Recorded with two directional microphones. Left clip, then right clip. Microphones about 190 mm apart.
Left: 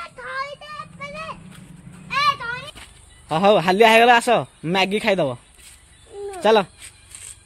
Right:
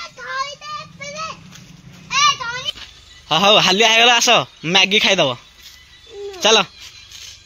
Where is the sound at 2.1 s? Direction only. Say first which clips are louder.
Right 4 dB; 40° left (ahead or behind).